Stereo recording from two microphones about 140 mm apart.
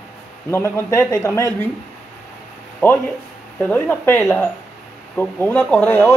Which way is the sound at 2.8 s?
15° left (ahead or behind).